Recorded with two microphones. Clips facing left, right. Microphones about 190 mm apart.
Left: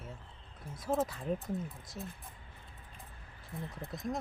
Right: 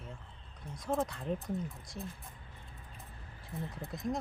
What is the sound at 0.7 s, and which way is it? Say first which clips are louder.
Speech: left 1 dB; 5° left (ahead or behind).